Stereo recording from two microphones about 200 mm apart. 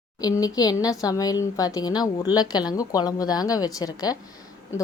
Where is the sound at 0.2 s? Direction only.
20° left (ahead or behind).